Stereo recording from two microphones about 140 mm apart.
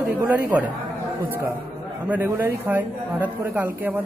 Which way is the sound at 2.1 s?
15° right (ahead or behind).